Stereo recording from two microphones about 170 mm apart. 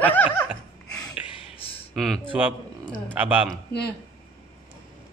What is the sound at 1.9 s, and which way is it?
Speech, 5° left (ahead or behind).